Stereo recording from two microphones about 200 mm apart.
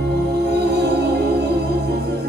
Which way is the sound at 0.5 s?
55° right (ahead or behind).